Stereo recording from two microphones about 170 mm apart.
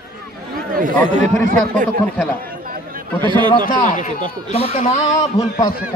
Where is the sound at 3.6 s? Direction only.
50° left (ahead or behind).